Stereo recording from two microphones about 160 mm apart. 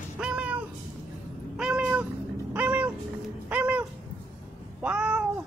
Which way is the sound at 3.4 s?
10° right (ahead or behind).